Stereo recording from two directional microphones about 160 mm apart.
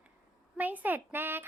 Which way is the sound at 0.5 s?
10° right (ahead or behind).